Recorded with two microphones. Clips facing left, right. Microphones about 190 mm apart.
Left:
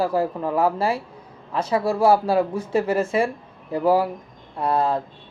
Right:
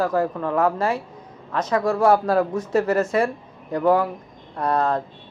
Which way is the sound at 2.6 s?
30° left (ahead or behind).